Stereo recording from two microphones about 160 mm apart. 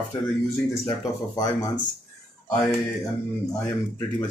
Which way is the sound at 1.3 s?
25° left (ahead or behind).